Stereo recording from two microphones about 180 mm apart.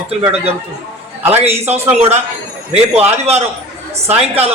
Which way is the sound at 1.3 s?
35° right (ahead or behind).